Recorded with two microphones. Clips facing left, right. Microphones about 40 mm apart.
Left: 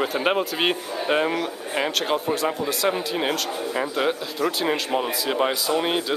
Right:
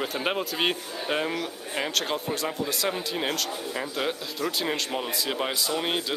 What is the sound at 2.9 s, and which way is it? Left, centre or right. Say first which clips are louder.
A man's voice: left 4 dB; centre.